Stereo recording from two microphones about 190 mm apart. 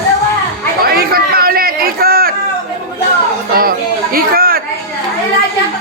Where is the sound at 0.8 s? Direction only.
50° right (ahead or behind).